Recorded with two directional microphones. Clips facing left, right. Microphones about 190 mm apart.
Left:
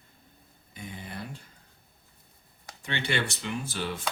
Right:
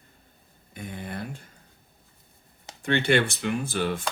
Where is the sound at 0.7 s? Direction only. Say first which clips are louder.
Right 5 dB; 55° right (ahead or behind).